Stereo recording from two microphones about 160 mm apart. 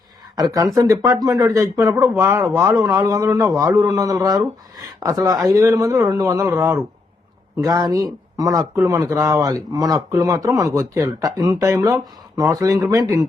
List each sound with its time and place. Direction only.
0.3 s a man's voice: 20° right (ahead or behind)